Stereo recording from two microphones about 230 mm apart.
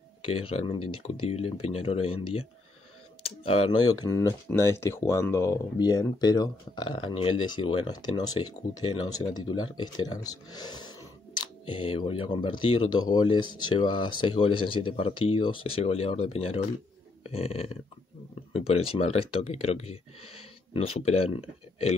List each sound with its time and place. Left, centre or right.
0.2 s speech: left